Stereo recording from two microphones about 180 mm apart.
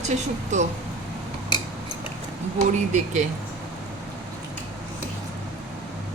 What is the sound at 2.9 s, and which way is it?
Speech, 45° right (ahead or behind).